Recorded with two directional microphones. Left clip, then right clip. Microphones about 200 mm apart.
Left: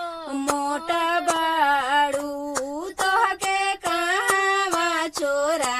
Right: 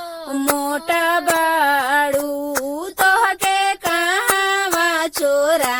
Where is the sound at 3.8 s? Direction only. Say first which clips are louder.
Right 4 dB; 45° right (ahead or behind).